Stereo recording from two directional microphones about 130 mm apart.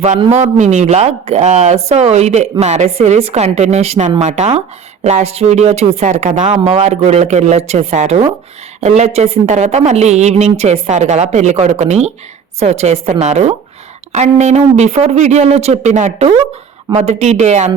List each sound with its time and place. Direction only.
0.3 s speech: 60° right (ahead or behind)